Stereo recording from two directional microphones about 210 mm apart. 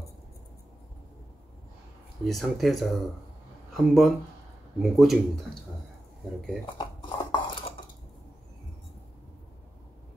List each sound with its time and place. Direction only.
2.2 s speech: centre (ahead or behind)
6.6 s dishes: 20° left (ahead or behind)